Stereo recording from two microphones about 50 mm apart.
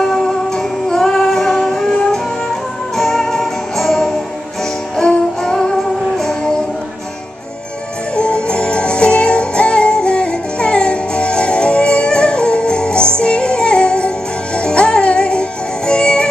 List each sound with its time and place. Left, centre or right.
0.0 s music: centre
3.0 s music: centre
8.2 s music: centre